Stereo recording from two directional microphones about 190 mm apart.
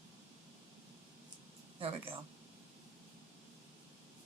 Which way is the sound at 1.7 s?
30° right (ahead or behind).